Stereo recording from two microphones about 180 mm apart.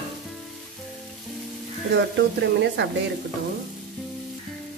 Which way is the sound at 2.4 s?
80° right.